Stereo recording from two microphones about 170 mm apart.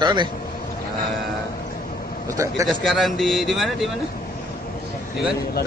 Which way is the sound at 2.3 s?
20° right (ahead or behind).